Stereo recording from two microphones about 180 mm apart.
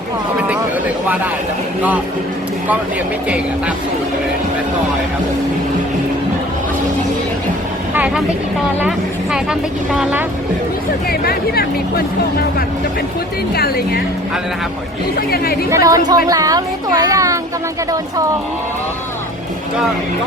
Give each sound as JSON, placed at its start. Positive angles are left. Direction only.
{"t": 7.9, "sound": "speech", "side_deg": -5}
{"t": 9.3, "sound": "speech", "side_deg": -5}
{"t": 11.1, "sound": "speech", "side_deg": 60}
{"t": 15.7, "sound": "a child's voice", "side_deg": -20}